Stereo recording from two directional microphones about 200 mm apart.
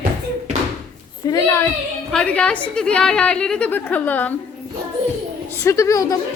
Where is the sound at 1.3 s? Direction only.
15° left (ahead or behind).